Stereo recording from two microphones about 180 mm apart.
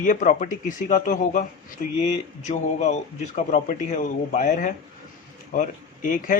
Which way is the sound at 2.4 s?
40° left (ahead or behind).